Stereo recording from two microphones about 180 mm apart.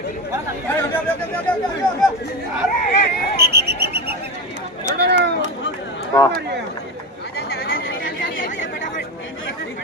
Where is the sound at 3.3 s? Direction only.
60° right (ahead or behind).